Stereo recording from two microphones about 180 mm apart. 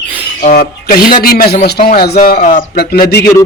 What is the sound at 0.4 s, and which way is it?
Speech, 55° left (ahead or behind).